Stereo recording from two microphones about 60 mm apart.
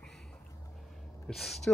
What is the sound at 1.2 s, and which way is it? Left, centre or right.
Speech, centre.